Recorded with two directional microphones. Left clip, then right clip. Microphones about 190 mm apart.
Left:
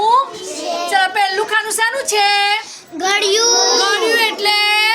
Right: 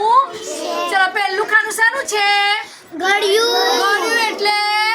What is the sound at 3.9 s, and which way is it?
Child singing, 20° left (ahead or behind).